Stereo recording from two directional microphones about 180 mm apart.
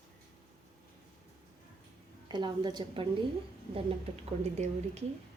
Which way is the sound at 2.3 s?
25° right (ahead or behind).